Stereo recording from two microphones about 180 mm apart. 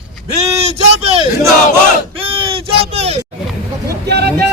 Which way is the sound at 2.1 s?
30° right (ahead or behind).